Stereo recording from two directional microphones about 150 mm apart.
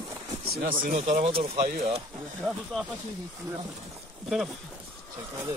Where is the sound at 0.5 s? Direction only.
75° right (ahead or behind); by 1.3 s 55° right (ahead or behind).